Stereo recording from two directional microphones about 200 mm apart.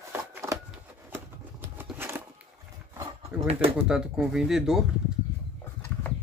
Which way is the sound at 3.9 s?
5° right (ahead or behind).